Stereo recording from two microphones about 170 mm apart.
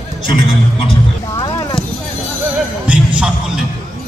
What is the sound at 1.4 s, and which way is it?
Clip-clop, 25° left (ahead or behind).